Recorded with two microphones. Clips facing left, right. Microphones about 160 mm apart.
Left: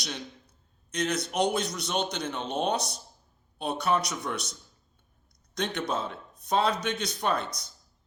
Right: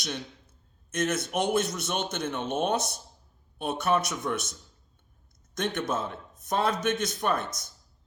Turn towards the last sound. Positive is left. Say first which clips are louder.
# right 1 dB
turn(degrees=-50)  # may be behind; listen again after turning